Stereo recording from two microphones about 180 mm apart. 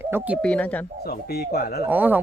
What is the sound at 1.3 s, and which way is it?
Speech, 60° left (ahead or behind).